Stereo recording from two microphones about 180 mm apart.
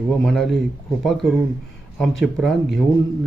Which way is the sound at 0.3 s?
Centre (ahead or behind).